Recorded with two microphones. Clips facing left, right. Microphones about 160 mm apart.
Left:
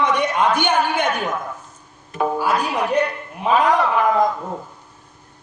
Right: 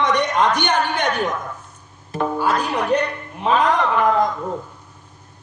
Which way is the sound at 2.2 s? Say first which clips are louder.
Left 1 dB; 10° left (ahead or behind).